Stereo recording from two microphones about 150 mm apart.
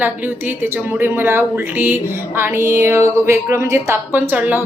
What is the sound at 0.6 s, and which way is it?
Speech, 15° right (ahead or behind).